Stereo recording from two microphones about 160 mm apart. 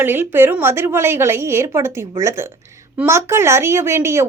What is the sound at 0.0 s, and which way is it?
A woman's voice, 15° right (ahead or behind).